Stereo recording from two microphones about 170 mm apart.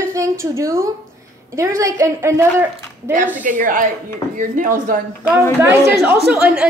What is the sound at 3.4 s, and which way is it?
A woman's voice, 50° right (ahead or behind).